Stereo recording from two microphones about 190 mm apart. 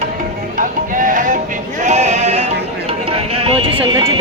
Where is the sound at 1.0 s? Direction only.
45° right (ahead or behind).